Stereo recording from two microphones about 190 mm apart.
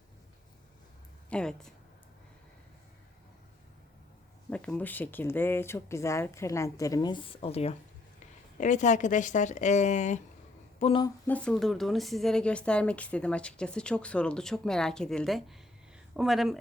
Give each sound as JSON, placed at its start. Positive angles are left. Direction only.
{"t": 1.3, "sound": "speech", "side_deg": 5}
{"t": 4.4, "sound": "speech", "side_deg": 5}
{"t": 11.3, "sound": "speech", "side_deg": 5}